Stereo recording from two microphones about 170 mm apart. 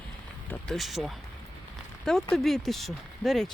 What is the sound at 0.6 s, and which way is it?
Speech, centre (ahead or behind).